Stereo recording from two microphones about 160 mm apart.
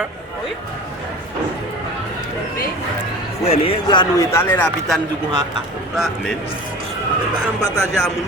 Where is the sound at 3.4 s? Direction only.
40° left (ahead or behind).